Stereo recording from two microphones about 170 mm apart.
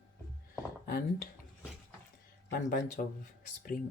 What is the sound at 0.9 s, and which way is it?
Speech, 60° left (ahead or behind).